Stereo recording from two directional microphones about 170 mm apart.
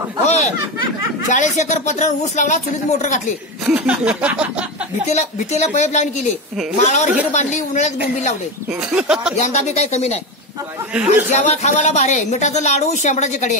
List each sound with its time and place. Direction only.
0.2 s a woman's voice: 40° left (ahead or behind)
3.6 s speech: 5° right (ahead or behind)
5.0 s a woman's voice: 45° left (ahead or behind)
8.9 s speech: 5° right (ahead or behind)
9.4 s speech: 40° left (ahead or behind)
11.3 s a woman's voice: 45° left (ahead or behind)